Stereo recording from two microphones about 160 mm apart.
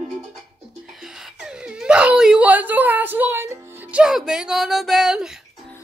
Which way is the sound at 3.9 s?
5° right (ahead or behind).